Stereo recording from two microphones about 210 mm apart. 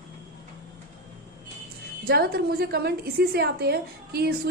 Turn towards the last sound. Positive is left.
turn(degrees=-50)  # may be behind; listen again after turning